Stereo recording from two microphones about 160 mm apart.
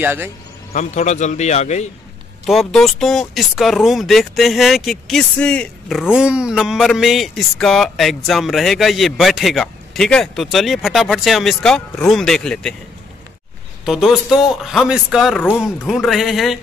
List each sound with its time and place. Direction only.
0.0 s a man's voice: 15° right (ahead or behind)
0.7 s a man's voice: 45° left (ahead or behind)
2.4 s speech: centre (ahead or behind)
13.8 s speech: 5° right (ahead or behind)